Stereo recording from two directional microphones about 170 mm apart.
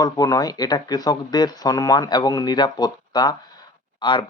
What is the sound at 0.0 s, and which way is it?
Speech, 20° left (ahead or behind).